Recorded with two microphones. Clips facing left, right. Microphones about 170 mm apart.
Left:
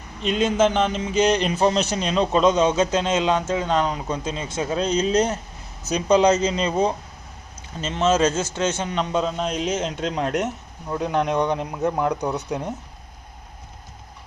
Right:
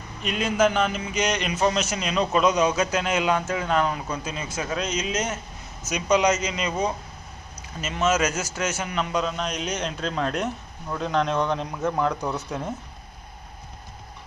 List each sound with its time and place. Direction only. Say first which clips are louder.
0.2 s a man's voice: left 3 dB; 25° left (ahead or behind)
9.8 s speech: left 2 dB; 20° left (ahead or behind)